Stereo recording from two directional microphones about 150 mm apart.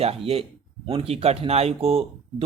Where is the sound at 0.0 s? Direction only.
40° right (ahead or behind).